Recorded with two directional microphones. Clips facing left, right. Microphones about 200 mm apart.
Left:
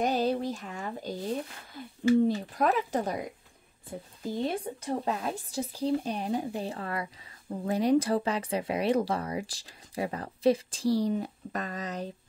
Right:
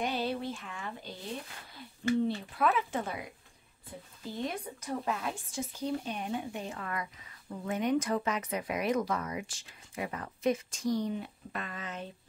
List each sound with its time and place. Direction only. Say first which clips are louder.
0.0 s speech: left 6 dB; 40° left (ahead or behind)